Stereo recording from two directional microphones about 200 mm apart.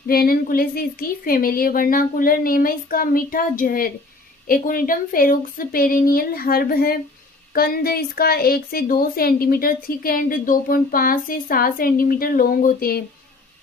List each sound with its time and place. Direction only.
0.1 s a woman's voice: 50° left (ahead or behind)